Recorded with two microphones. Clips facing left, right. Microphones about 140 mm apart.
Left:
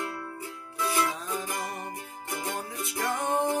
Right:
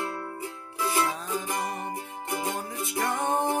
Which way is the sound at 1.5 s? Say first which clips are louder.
Right 3 dB; 25° right (ahead or behind).